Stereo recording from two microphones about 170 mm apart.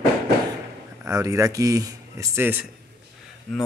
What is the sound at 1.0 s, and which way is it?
Speech, 20° right (ahead or behind).